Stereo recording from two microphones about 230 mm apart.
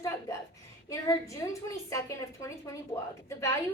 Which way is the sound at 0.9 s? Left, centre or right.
Centre.